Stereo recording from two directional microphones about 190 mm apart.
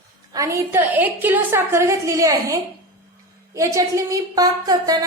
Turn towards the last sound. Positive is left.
turn(degrees=-20)  # may be behind; listen again after turning